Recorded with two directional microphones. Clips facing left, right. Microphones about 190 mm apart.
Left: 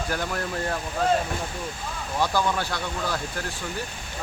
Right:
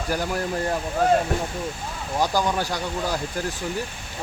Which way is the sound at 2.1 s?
15° right (ahead or behind).